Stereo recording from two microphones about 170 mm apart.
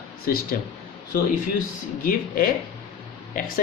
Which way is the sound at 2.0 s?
55° left (ahead or behind).